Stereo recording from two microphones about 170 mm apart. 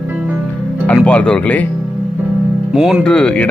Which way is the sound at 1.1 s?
5° left (ahead or behind).